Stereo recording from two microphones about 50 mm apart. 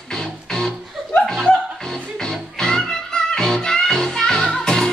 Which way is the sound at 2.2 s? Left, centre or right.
Centre.